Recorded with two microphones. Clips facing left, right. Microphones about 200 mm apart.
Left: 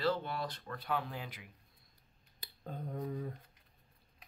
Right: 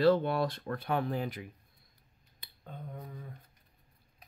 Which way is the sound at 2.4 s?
40° left (ahead or behind).